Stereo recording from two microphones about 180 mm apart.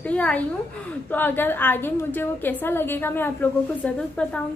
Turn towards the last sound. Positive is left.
turn(degrees=5)  # may be behind; listen again after turning